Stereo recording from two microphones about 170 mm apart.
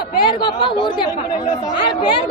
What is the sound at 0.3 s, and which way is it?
Speech, 25° left (ahead or behind).